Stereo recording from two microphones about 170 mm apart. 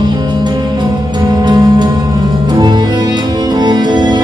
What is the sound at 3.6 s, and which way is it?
Music, 25° right (ahead or behind).